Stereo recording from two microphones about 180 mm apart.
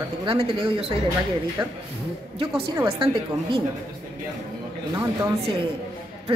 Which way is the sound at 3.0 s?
30° right (ahead or behind).